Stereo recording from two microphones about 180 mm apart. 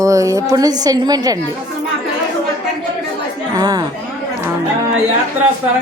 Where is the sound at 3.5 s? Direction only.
20° right (ahead or behind).